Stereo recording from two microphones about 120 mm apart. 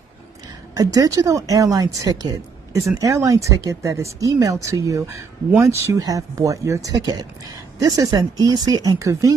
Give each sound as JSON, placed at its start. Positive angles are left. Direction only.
{"t": 0.7, "sound": "speech", "side_deg": -30}